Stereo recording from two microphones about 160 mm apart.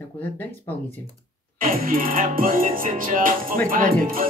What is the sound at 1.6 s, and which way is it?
Speech, 60° right (ahead or behind).